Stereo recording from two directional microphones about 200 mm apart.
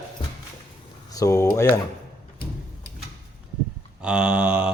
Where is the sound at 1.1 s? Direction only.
15° left (ahead or behind).